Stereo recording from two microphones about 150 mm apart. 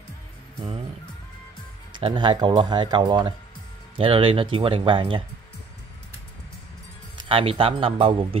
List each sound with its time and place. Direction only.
1.9 s speech: 30° right (ahead or behind)
7.2 s speech: 35° right (ahead or behind)